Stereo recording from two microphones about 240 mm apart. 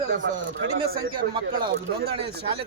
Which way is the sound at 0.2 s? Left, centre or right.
Right.